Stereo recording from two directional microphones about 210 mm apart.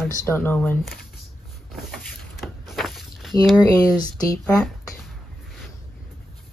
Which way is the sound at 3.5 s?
20° left (ahead or behind).